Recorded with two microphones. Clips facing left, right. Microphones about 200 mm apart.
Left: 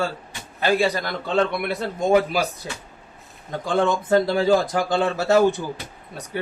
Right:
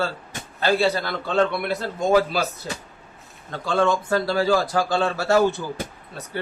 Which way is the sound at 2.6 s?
15° left (ahead or behind).